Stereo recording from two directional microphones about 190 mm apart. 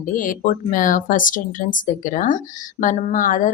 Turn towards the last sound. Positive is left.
turn(degrees=45)  # may be behind; listen again after turning